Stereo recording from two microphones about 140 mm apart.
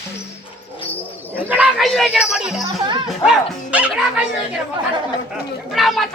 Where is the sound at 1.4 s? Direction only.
10° right (ahead or behind).